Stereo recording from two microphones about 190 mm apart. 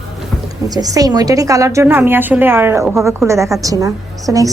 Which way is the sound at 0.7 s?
20° right (ahead or behind).